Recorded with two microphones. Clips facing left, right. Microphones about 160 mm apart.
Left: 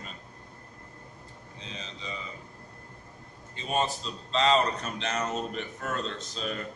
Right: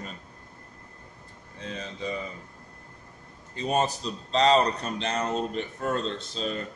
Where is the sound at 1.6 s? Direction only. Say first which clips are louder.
Right 8 dB; 50° right (ahead or behind).